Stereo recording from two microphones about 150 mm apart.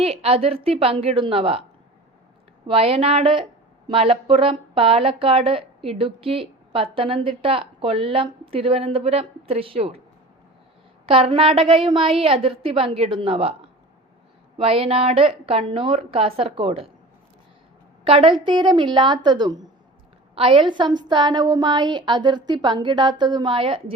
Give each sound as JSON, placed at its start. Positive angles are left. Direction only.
{"t": 0.0, "sound": "a woman's voice", "side_deg": -40}
{"t": 2.6, "sound": "a woman's voice", "side_deg": -40}
{"t": 11.0, "sound": "a woman's voice", "side_deg": -40}
{"t": 14.6, "sound": "a woman's voice", "side_deg": -40}
{"t": 18.0, "sound": "a woman's voice", "side_deg": -35}